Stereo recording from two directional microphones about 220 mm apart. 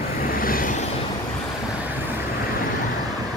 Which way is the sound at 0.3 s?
40° left (ahead or behind).